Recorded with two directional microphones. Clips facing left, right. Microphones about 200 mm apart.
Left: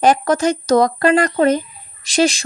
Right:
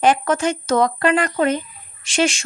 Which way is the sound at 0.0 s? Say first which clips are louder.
Left 3 dB; 40° left (ahead or behind).